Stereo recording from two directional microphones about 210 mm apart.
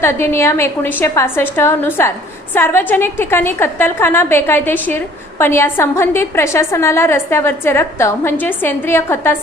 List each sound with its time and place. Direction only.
0.0 s a woman's voice: 10° left (ahead or behind)